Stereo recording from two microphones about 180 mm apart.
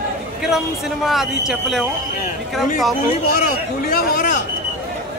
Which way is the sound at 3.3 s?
55° left (ahead or behind).